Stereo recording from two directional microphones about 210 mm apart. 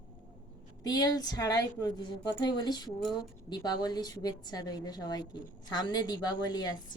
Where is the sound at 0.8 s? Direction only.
20° left (ahead or behind).